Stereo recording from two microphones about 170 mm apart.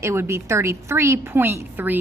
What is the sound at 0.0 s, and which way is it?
A woman's voice, 15° right (ahead or behind).